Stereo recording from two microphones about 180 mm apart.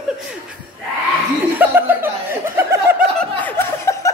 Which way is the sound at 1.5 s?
10° right (ahead or behind).